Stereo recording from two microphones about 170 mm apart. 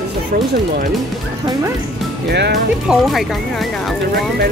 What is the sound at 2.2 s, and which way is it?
Speech, 75° right (ahead or behind).